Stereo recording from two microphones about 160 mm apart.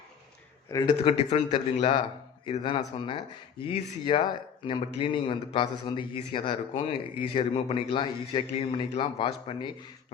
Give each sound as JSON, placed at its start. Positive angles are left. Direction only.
{"t": 0.7, "sound": "speech", "side_deg": 25}
{"t": 1.0, "sound": "a man's voice", "side_deg": 40}